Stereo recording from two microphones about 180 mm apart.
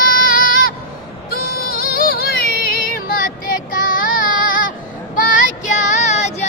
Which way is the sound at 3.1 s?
50° left (ahead or behind).